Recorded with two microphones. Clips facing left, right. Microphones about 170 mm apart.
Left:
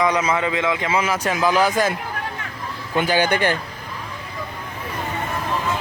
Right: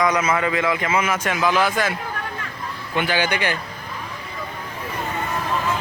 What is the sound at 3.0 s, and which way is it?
Speech, 45° left (ahead or behind).